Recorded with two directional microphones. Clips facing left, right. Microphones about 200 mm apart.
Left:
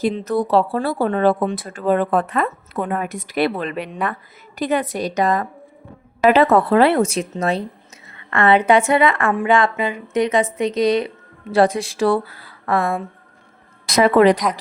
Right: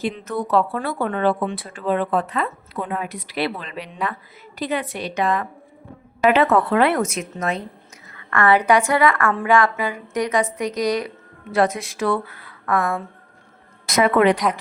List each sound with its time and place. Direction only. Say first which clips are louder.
0.0 s a woman's voice: left 6 dB; 35° left (ahead or behind)